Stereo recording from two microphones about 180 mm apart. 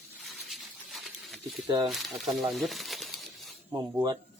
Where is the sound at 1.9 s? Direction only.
Centre (ahead or behind).